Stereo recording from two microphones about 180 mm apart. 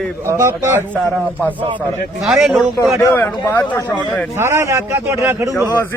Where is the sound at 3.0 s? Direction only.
10° left (ahead or behind).